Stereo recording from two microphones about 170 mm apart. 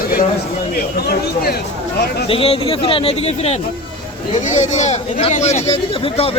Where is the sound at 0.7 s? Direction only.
65° left (ahead or behind).